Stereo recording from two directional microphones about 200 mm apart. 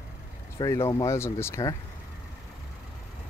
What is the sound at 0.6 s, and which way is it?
Speech, 20° left (ahead or behind).